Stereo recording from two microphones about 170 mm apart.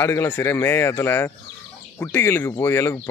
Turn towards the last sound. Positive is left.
turn(degrees=15)  # may be behind; listen again after turning